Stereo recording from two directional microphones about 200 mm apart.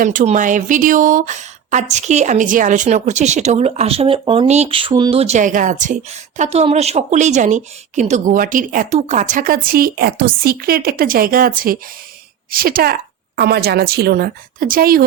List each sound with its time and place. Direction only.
0.0 s a woman's voice: 40° right (ahead or behind)